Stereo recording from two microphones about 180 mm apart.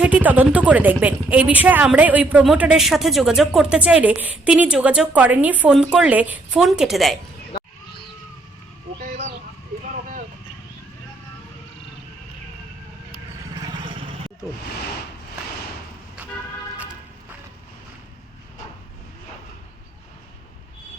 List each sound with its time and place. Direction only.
0.0 s speech: 10° right (ahead or behind)
13.4 s vehicle: 25° right (ahead or behind)
16.7 s vehicle: 5° right (ahead or behind)